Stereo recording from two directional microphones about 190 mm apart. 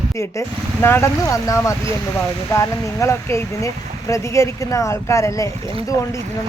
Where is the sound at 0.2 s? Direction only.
15° left (ahead or behind).